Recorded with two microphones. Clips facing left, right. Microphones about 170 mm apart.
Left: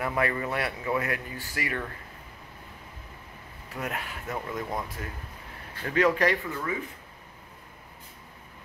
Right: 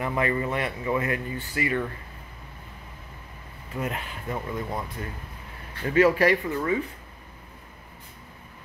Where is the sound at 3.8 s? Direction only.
Centre (ahead or behind).